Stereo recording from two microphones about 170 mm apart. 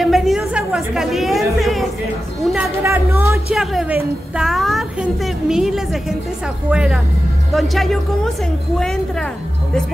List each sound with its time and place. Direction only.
0.0 s chatter: centre (ahead or behind)
2.8 s speech: 15° right (ahead or behind)
3.5 s a woman's voice: centre (ahead or behind)